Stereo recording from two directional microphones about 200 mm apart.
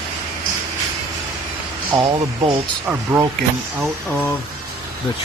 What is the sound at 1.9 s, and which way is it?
Speech, 25° right (ahead or behind).